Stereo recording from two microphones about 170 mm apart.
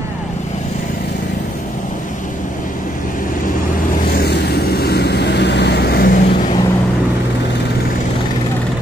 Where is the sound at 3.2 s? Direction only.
55° left (ahead or behind).